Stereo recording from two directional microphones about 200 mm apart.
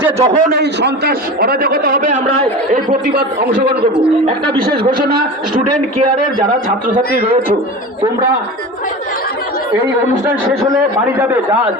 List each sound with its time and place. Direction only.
0.2 s a man's voice: 40° right (ahead or behind)
0.5 s a man's voice: 60° right (ahead or behind)
4.7 s a man's voice: 20° right (ahead or behind)